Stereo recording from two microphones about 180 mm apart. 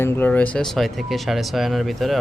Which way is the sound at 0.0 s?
10° left (ahead or behind).